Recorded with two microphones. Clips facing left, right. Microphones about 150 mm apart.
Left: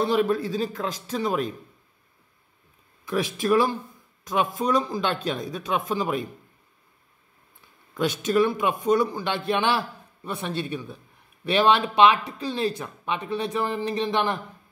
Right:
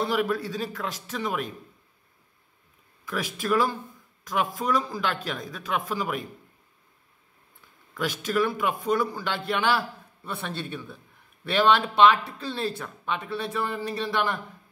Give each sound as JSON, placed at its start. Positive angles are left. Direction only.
{"t": 0.0, "sound": "a man's voice", "side_deg": 25}
{"t": 3.3, "sound": "a man's voice", "side_deg": 20}
{"t": 7.9, "sound": "a man's voice", "side_deg": 20}